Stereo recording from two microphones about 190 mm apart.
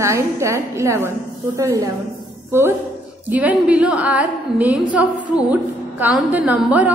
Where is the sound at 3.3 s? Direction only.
10° right (ahead or behind).